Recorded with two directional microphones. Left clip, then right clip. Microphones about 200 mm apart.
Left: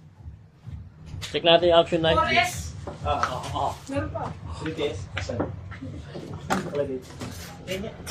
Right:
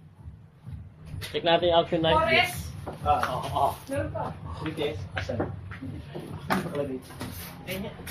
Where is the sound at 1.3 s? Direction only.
35° left (ahead or behind).